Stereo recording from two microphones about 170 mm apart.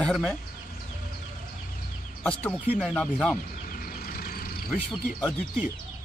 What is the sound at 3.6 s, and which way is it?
Vehicle, 55° left (ahead or behind).